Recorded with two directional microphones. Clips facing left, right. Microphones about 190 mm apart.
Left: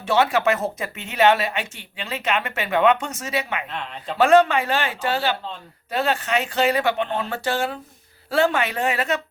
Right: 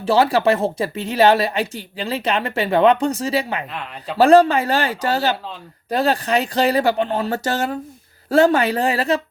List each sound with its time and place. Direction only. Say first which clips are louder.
0.0 s speech: right 4 dB; 35° right (ahead or behind)
3.7 s speech: right 1 dB; 5° right (ahead or behind)
4.2 s speech: right 4 dB; 35° right (ahead or behind)